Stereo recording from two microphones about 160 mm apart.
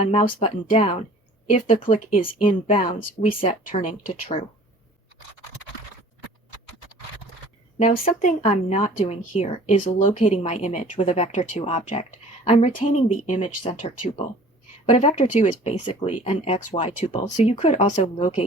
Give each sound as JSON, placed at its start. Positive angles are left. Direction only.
{"t": 0.1, "sound": "speech", "side_deg": 35}
{"t": 1.5, "sound": "speech", "side_deg": 50}
{"t": 2.6, "sound": "speech", "side_deg": 35}
{"t": 8.0, "sound": "speech", "side_deg": 45}
{"t": 13.7, "sound": "speech", "side_deg": 40}
{"t": 15.9, "sound": "speech", "side_deg": 35}